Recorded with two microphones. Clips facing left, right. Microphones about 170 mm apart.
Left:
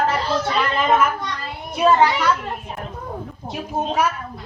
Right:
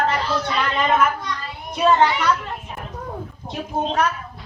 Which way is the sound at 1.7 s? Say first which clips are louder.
Left 1 dB; 5° left (ahead or behind).